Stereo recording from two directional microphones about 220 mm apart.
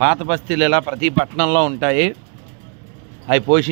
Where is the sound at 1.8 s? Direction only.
10° right (ahead or behind).